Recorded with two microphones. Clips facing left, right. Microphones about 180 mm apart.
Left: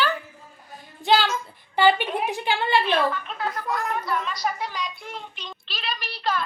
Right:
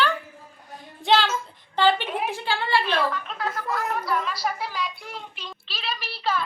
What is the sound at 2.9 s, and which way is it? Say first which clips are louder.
Speech: left 2 dB; centre (ahead or behind).